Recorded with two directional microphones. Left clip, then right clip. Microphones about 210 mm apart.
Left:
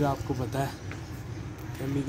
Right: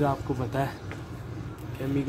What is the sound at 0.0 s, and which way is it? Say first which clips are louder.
Speech: right 2 dB; 5° right (ahead or behind).